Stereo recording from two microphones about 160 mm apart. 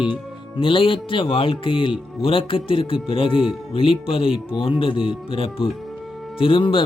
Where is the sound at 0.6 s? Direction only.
35° left (ahead or behind).